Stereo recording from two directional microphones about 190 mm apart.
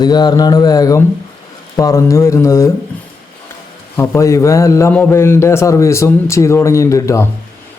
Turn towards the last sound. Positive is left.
turn(degrees=15)  # may be behind; listen again after turning